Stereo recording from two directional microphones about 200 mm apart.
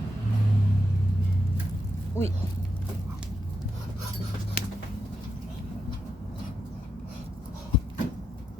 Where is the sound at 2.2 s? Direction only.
10° left (ahead or behind).